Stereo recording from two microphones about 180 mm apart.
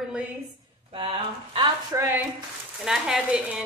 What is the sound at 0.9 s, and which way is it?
Speech, 30° right (ahead or behind).